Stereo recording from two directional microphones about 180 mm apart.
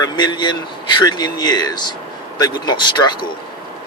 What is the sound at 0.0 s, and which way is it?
Speech, 25° left (ahead or behind).